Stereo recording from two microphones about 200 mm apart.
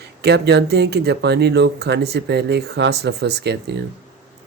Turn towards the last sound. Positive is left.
turn(degrees=-55)  # may be behind; listen again after turning